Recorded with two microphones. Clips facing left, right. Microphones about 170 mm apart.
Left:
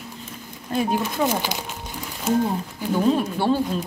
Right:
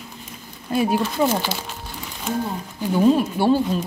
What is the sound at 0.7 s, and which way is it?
Speech, 10° right (ahead or behind).